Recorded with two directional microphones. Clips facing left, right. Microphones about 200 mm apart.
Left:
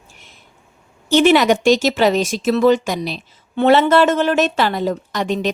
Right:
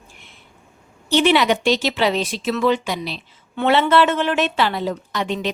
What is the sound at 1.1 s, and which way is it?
Speech, 45° left (ahead or behind).